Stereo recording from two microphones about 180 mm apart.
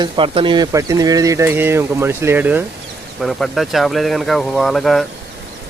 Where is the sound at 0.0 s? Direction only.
30° right (ahead or behind); by 5.0 s centre (ahead or behind).